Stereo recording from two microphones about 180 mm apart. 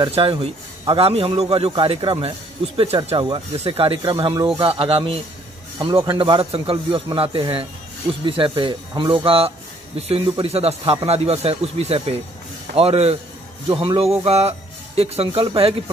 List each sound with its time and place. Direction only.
0.0 s a man's voice: 30° right (ahead or behind)